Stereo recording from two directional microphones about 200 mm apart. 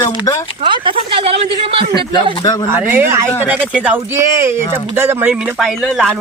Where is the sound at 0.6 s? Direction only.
25° right (ahead or behind).